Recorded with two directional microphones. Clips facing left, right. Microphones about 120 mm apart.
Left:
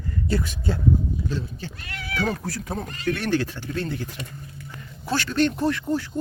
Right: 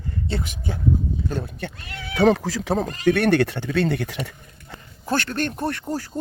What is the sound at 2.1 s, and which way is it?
Speech, 85° right.